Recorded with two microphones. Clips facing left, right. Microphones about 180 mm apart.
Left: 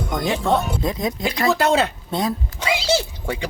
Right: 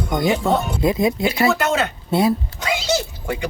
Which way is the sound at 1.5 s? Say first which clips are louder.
Left 2 dB; 30° left (ahead or behind).